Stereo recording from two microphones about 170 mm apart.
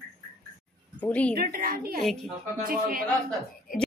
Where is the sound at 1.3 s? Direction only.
60° right (ahead or behind).